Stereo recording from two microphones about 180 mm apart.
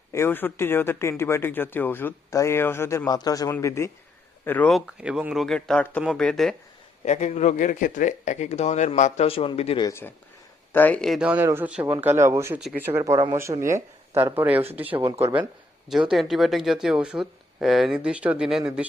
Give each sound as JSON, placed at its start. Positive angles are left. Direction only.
{"t": 0.1, "sound": "speech", "side_deg": 15}
{"t": 7.1, "sound": "a man's voice", "side_deg": 40}
{"t": 9.8, "sound": "speech", "side_deg": 15}
{"t": 15.9, "sound": "speech", "side_deg": 0}